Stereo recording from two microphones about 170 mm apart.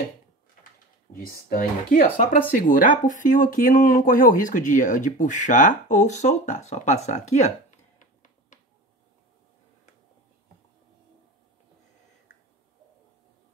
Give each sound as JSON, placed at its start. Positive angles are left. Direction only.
{"t": 1.1, "sound": "speech", "side_deg": 55}